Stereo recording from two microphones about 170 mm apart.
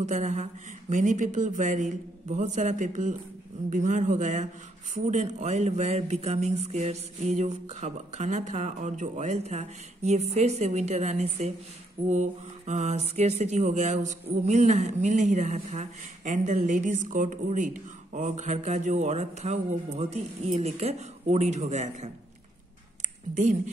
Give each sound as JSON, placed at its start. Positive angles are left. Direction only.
{"t": 0.0, "sound": "mantra", "side_deg": -45}
{"t": 4.9, "sound": "speech", "side_deg": -45}
{"t": 12.1, "sound": "mantra", "side_deg": -45}